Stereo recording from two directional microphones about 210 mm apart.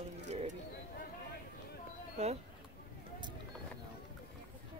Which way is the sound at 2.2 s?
30° right (ahead or behind).